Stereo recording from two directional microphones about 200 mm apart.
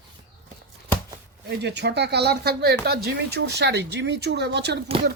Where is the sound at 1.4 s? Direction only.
55° right (ahead or behind).